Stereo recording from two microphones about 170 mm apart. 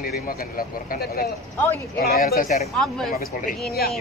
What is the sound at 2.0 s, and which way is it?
Speech, 65° left (ahead or behind).